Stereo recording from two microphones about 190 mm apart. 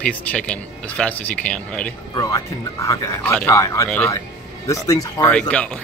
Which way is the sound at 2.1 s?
15° left (ahead or behind).